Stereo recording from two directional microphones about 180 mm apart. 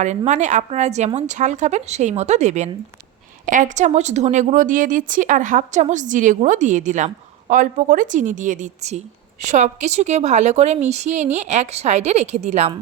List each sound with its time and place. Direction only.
0.3 s a woman's voice: 40° right (ahead or behind)